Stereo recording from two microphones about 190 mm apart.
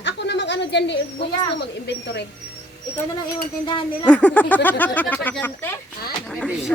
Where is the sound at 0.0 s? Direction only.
65° left (ahead or behind).